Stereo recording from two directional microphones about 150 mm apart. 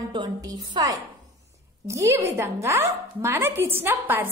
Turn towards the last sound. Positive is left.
turn(degrees=-15)  # may be behind; listen again after turning